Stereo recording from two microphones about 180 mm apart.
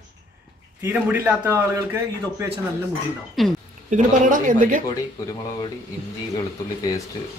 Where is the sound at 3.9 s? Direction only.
45° right (ahead or behind).